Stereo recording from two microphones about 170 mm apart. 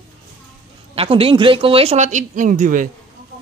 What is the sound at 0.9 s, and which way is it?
Speech, 35° right (ahead or behind).